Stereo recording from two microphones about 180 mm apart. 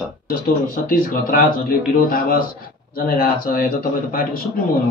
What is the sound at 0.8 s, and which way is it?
Speech, 50° left (ahead or behind).